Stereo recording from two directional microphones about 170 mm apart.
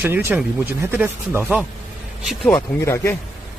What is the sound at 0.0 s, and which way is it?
Speech, 10° right (ahead or behind).